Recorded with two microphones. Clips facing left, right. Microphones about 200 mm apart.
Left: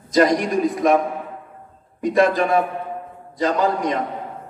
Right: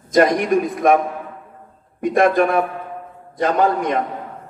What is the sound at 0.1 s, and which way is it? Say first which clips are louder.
Speech: right 2 dB; 55° right (ahead or behind).